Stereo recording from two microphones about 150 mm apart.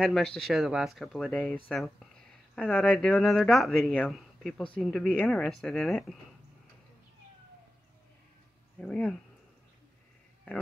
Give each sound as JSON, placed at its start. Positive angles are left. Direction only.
{"t": 0.0, "sound": "speech", "side_deg": 5}
{"t": 8.7, "sound": "speech", "side_deg": 10}